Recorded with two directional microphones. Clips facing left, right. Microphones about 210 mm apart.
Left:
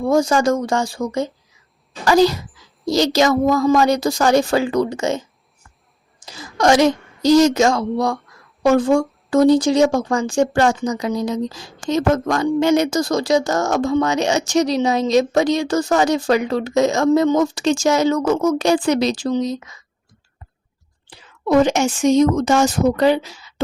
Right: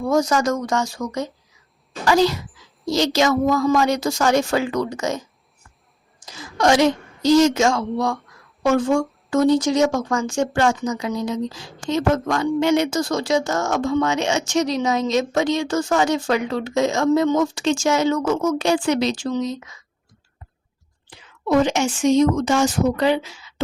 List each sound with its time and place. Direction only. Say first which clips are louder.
0.0 s speech: left 3 dB; 30° left (ahead or behind)
6.2 s a woman's voice: left 2 dB; 40° left (ahead or behind)
21.1 s a woman's voice: left 3 dB; 45° left (ahead or behind)